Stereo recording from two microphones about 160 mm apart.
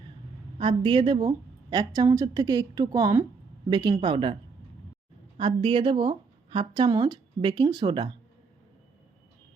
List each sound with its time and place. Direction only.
0.6 s a woman's voice: 30° right (ahead or behind)
5.4 s a woman's voice: 30° right (ahead or behind)